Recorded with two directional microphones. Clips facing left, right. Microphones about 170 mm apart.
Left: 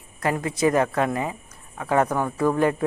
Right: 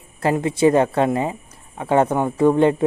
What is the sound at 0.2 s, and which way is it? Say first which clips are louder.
A woman's voice: right 5 dB; 25° right (ahead or behind).